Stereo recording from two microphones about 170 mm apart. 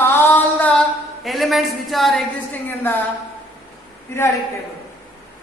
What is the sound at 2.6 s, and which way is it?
Speech, 10° left (ahead or behind).